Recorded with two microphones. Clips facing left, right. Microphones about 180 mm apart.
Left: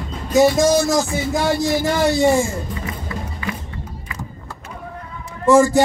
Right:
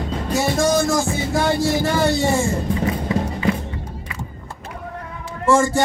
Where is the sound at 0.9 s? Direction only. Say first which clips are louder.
Left 1 dB; 15° left (ahead or behind).